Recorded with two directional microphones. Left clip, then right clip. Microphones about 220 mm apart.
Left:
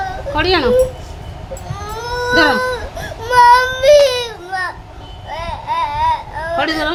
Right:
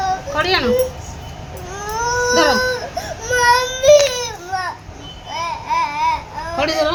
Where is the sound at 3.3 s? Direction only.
10° left (ahead or behind).